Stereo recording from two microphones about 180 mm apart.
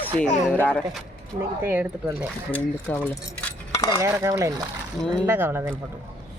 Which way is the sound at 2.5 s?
10° left (ahead or behind).